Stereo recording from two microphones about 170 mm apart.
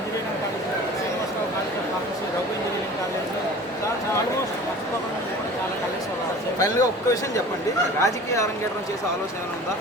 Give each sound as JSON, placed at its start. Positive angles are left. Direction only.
{"t": 6.6, "sound": "a woman's voice", "side_deg": 20}